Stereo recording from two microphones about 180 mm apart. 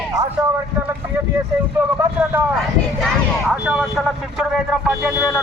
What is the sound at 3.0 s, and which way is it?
Speech, centre (ahead or behind).